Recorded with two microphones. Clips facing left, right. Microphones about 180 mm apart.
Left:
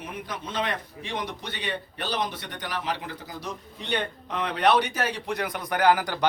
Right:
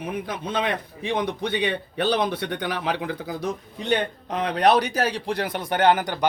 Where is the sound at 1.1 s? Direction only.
55° right (ahead or behind).